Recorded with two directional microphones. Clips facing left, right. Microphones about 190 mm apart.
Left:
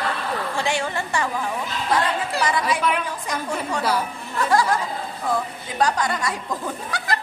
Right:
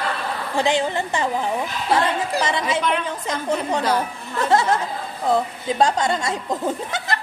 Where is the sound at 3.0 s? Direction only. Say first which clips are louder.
Right 4 dB; 20° right (ahead or behind).